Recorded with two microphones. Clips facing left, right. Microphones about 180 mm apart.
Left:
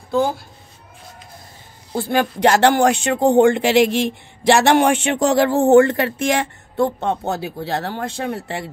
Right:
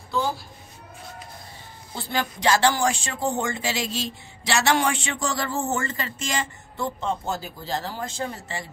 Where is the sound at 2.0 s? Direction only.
55° left (ahead or behind).